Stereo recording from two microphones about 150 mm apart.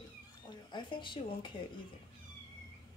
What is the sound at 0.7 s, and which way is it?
Speech, 30° left (ahead or behind).